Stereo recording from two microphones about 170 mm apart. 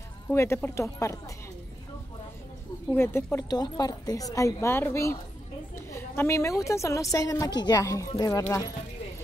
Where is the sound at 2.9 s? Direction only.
15° left (ahead or behind).